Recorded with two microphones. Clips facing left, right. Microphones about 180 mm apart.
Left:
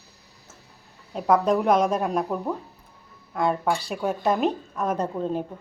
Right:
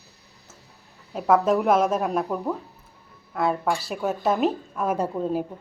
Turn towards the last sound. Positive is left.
turn(degrees=-5)  # may be behind; listen again after turning